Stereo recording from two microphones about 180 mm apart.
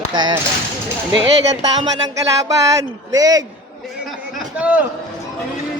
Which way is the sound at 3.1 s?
20° right (ahead or behind).